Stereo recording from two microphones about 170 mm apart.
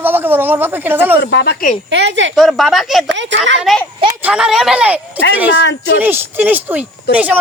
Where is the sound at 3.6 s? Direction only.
Centre (ahead or behind).